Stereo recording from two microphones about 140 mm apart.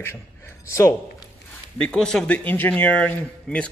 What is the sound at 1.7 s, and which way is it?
Speech, 5° left (ahead or behind).